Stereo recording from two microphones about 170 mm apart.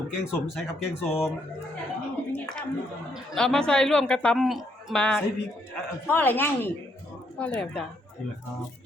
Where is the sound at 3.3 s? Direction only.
5° left (ahead or behind).